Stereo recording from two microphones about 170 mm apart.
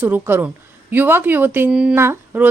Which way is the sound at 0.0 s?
10° right (ahead or behind).